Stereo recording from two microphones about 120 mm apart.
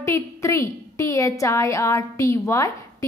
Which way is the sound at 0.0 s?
25° left (ahead or behind).